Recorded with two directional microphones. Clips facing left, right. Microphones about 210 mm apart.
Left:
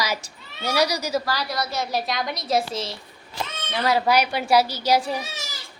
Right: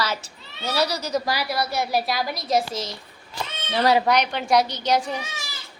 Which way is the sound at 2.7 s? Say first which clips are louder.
Left 1 dB; 30° left (ahead or behind).